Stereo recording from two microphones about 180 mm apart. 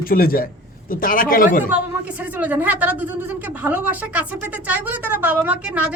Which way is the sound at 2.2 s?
10° right (ahead or behind).